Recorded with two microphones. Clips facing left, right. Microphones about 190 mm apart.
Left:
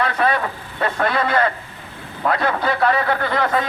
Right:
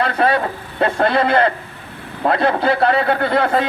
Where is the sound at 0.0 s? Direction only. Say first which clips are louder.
Right 3 dB; 30° right (ahead or behind).